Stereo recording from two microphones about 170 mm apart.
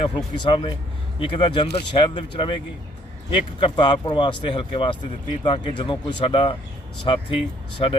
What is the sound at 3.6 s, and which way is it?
Speech, 25° left (ahead or behind).